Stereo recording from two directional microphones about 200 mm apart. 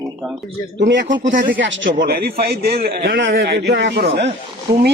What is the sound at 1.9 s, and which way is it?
A man's voice, 50° right (ahead or behind).